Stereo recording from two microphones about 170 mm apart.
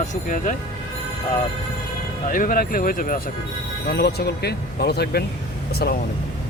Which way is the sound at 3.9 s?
75° left (ahead or behind).